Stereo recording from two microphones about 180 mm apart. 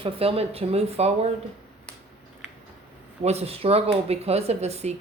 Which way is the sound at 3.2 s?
35° right (ahead or behind).